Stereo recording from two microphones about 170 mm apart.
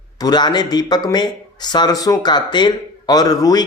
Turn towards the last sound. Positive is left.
turn(degrees=20)  # may be behind; listen again after turning